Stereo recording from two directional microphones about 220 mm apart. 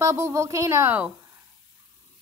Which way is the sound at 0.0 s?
15° right (ahead or behind).